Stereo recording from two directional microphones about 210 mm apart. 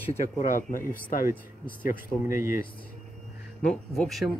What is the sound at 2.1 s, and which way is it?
Speech, 25° left (ahead or behind).